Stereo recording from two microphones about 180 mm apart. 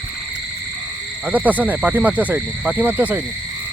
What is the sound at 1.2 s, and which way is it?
Speech, 10° right (ahead or behind).